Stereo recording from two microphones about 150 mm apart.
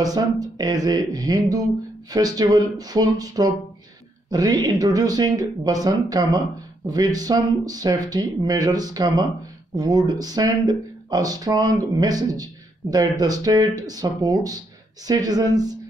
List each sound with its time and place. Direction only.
0.0 s speech: 25° right (ahead or behind)